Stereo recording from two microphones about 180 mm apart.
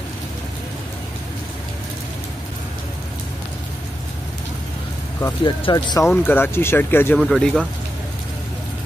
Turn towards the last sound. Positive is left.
turn(degrees=0)  # may be behind; listen again after turning